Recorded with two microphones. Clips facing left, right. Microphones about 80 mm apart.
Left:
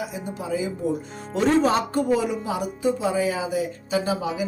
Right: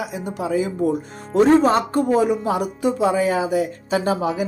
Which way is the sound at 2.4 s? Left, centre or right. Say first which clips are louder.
Right 4 dB; right.